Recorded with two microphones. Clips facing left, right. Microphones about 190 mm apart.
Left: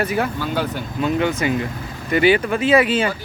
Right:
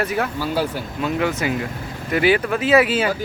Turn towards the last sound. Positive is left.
turn(degrees=-5)  # may be behind; listen again after turning